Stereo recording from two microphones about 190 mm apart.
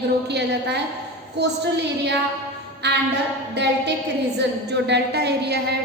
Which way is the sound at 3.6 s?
65° right (ahead or behind).